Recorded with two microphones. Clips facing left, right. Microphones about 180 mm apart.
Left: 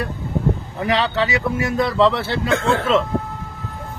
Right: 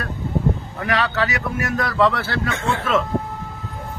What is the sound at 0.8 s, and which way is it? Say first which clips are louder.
Speech: left 3 dB; 25° left (ahead or behind).